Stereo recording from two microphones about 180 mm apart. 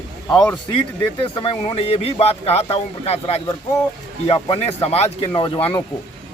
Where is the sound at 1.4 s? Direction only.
30° left (ahead or behind).